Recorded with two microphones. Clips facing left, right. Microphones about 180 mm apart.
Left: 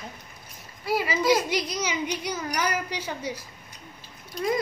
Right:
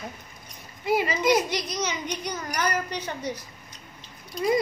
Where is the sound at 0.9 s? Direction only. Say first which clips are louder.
Right 3 dB; 20° right (ahead or behind).